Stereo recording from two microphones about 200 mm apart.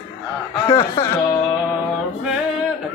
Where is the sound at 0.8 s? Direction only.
15° left (ahead or behind).